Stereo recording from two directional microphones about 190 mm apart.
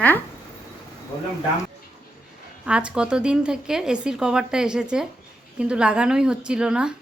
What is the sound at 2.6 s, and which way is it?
A woman's voice, 5° right (ahead or behind).